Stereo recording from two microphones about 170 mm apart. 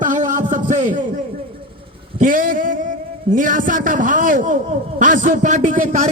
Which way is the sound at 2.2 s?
55° right (ahead or behind).